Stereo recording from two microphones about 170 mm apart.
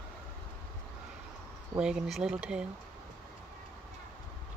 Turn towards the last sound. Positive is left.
turn(degrees=-5)  # may be behind; listen again after turning